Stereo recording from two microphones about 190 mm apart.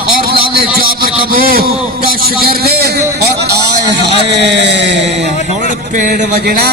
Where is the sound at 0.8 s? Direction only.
50° right (ahead or behind); by 5.6 s 65° right (ahead or behind).